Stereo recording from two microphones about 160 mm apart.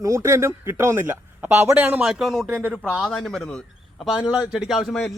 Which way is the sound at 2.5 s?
15° right (ahead or behind).